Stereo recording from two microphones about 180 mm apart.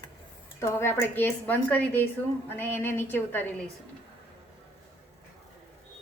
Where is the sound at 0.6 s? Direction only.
15° left (ahead or behind).